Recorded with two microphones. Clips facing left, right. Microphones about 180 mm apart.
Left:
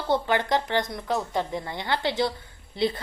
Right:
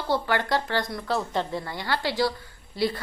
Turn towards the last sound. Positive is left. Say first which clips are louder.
# left 1 dB
turn(degrees=25)  # may be behind; listen again after turning